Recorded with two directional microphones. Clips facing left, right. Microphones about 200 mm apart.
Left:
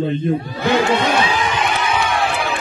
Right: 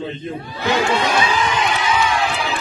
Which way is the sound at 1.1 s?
55° left (ahead or behind).